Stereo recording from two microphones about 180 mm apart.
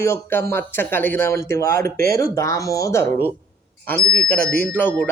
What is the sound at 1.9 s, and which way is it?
Speech, 55° right (ahead or behind).